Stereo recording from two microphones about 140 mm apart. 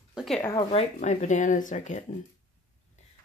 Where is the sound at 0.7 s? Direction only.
55° left (ahead or behind).